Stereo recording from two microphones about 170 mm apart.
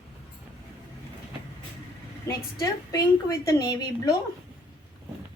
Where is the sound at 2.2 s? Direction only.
20° left (ahead or behind).